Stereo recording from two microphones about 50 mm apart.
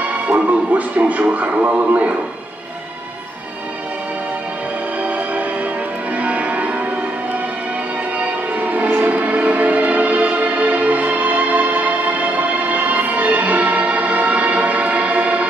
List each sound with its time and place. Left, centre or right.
0.3 s speech: right
5.0 s music: right
6.1 s change ringing: right
8.2 s music: right
9.1 s music: right